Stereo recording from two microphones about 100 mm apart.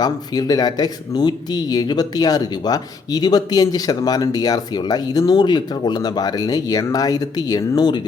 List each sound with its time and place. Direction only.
0.0 s speech: 40° left (ahead or behind)